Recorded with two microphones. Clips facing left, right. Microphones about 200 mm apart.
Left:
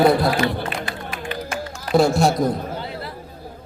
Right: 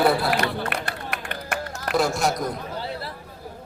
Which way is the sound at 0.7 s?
65° right (ahead or behind).